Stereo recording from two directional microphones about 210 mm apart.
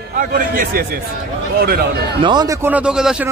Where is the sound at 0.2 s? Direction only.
40° right (ahead or behind).